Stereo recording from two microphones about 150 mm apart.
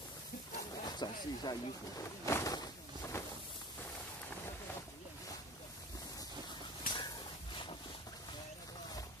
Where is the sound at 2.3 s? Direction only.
25° left (ahead or behind).